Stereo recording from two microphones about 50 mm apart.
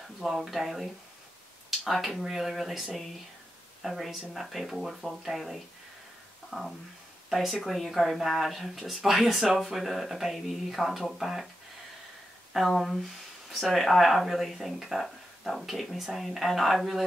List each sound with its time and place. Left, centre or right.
0.2 s speech: centre
1.9 s speech: centre
6.5 s speech: centre
7.2 s speech: centre
12.5 s speech: centre